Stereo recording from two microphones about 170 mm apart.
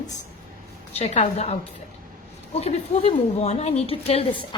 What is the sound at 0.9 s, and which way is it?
Speech, 40° left (ahead or behind).